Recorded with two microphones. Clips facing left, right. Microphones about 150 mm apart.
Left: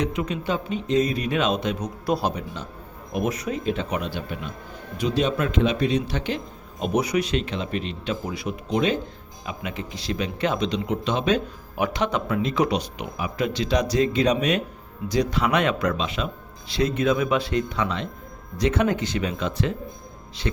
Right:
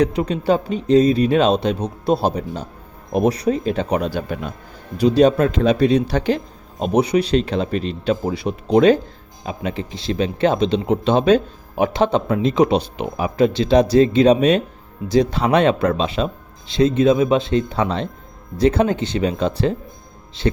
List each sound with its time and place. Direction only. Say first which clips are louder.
0.0 s speech: right 7 dB; 35° right (ahead or behind)